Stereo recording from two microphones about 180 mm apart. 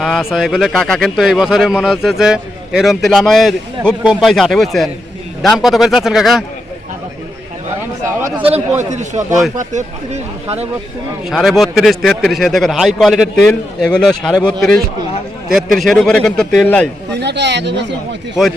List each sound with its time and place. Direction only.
0.0 s speech: centre (ahead or behind)
8.4 s speech: 35° right (ahead or behind)
11.3 s speech: centre (ahead or behind)
15.5 s speech: centre (ahead or behind)
17.1 s speech: 70° right (ahead or behind)